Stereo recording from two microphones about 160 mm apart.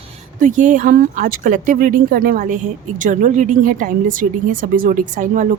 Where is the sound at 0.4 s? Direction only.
55° right (ahead or behind).